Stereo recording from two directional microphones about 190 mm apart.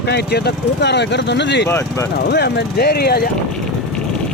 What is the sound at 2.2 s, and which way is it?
Speech, 60° left (ahead or behind).